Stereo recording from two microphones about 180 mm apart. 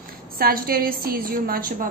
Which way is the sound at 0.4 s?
55° right (ahead or behind).